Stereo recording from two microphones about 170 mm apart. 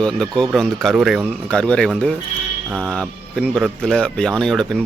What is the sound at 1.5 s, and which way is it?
Speech, 5° left (ahead or behind).